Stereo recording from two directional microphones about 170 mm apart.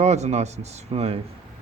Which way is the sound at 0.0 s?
40° right (ahead or behind).